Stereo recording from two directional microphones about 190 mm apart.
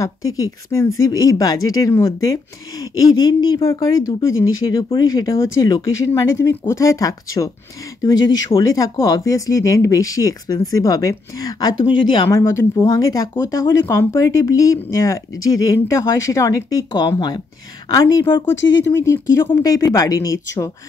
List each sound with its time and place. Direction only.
0.4 s speech: 15° left (ahead or behind)
4.3 s speech: 90° left
4.6 s speech: 20° left (ahead or behind)
12.3 s speech: 15° left (ahead or behind)
18.6 s speech: 75° left (ahead or behind)
18.9 s speech: 15° left (ahead or behind)